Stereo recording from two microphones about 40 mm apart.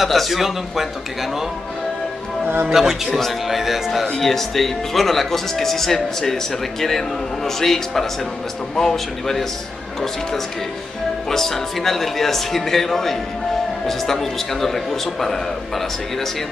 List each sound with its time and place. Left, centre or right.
0.0 s speech: centre
2.4 s speech: right
2.7 s a man's voice: centre
4.2 s speech: centre
11.2 s speech: centre